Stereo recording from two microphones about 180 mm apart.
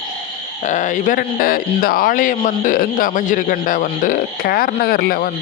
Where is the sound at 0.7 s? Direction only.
45° left (ahead or behind).